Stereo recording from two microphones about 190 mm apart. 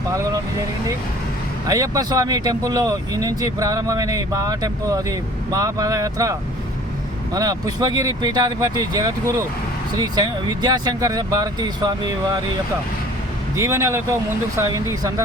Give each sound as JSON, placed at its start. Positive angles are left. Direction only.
{"t": 0.1, "sound": "vehicle", "side_deg": -20}
{"t": 1.6, "sound": "speech", "side_deg": -20}
{"t": 7.3, "sound": "speech", "side_deg": -20}
{"t": 13.6, "sound": "speech", "side_deg": -15}